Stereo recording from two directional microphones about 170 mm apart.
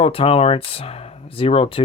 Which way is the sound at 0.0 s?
35° left (ahead or behind).